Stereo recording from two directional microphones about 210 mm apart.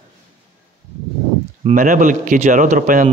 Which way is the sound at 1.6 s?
35° right (ahead or behind).